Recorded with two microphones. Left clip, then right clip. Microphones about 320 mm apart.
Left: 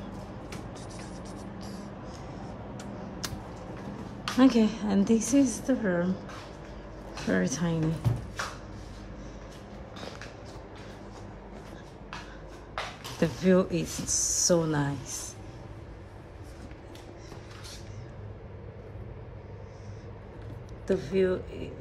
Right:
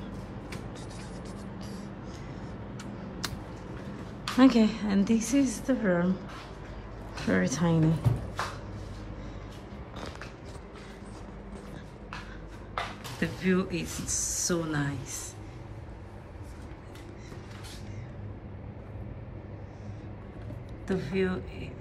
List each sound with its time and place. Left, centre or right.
0.7 s vehicle: centre
4.4 s a woman's voice: centre
7.2 s speech: centre
13.2 s a woman's voice: centre
13.8 s a woman's voice: centre
20.8 s a woman's voice: centre